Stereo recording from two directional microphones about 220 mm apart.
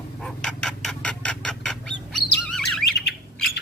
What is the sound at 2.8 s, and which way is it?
Bird, 50° left (ahead or behind).